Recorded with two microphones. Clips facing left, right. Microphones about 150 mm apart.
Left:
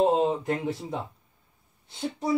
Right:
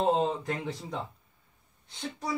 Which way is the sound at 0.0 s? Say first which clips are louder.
Left 4 dB; 10° left (ahead or behind).